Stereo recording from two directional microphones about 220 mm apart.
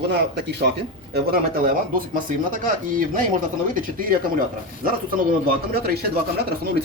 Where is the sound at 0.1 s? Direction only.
50° right (ahead or behind).